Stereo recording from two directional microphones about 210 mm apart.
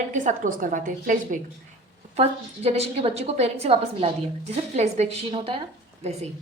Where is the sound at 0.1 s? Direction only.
40° right (ahead or behind).